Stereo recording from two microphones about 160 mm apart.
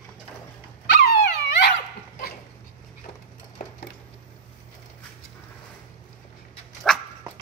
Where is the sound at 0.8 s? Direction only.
85° left.